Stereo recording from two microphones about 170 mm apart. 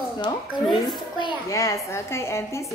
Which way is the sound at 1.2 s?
20° left (ahead or behind).